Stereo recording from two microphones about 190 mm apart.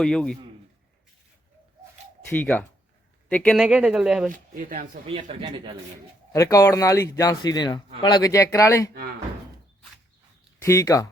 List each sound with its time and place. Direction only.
0.0 s speech: 5° left (ahead or behind)
2.3 s speech: 10° left (ahead or behind)
4.3 s speech: 45° right (ahead or behind)
5.0 s speech: 30° right (ahead or behind)
6.3 s speech: 15° left (ahead or behind)
10.6 s speech: 15° left (ahead or behind)